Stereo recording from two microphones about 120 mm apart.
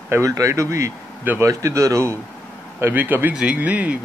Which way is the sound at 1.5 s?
25° right (ahead or behind).